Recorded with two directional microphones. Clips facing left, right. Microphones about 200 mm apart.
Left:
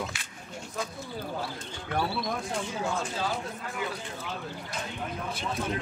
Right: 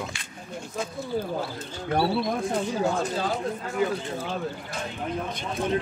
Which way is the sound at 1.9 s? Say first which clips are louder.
Right 6 dB; 35° right (ahead or behind).